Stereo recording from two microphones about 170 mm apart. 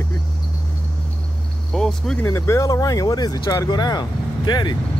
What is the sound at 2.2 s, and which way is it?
Speech, 15° left (ahead or behind).